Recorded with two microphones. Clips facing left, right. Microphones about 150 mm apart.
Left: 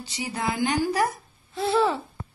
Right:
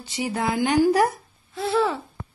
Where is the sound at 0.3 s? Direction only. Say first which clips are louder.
Right 3 dB; 50° right (ahead or behind).